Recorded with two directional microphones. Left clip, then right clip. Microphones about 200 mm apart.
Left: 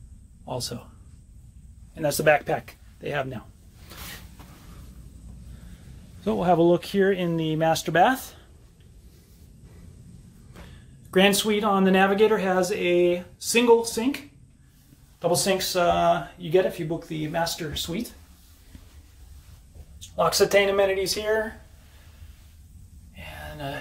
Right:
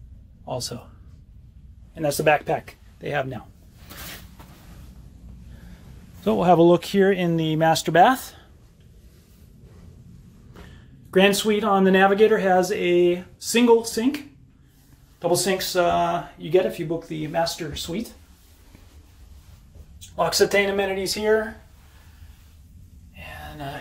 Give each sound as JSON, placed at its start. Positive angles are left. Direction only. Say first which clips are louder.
{"t": 0.5, "sound": "speech", "louder": "right 2 dB", "side_deg": 0}
{"t": 2.0, "sound": "speech", "louder": "right 1 dB", "side_deg": -5}
{"t": 6.2, "sound": "speech", "louder": "right 4 dB", "side_deg": -20}
{"t": 11.1, "sound": "speech", "louder": "right 2 dB", "side_deg": 0}
{"t": 20.2, "sound": "speech", "louder": "even", "side_deg": -5}